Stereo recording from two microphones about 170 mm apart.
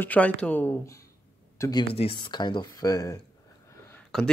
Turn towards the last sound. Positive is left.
turn(degrees=5)  # may be behind; listen again after turning